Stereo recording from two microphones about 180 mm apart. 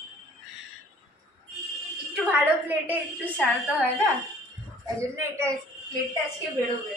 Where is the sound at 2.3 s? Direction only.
10° right (ahead or behind).